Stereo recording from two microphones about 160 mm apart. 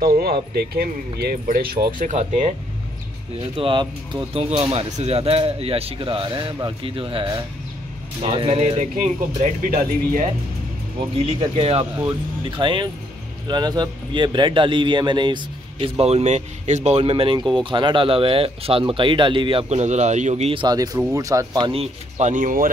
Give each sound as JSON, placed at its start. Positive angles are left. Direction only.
{"t": 0.0, "sound": "speech", "side_deg": -70}
{"t": 2.0, "sound": "speech", "side_deg": -50}
{"t": 3.5, "sound": "a man's voice", "side_deg": -30}
{"t": 9.4, "sound": "speech", "side_deg": -55}
{"t": 11.1, "sound": "a man's voice", "side_deg": -35}
{"t": 20.5, "sound": "a man's voice", "side_deg": -25}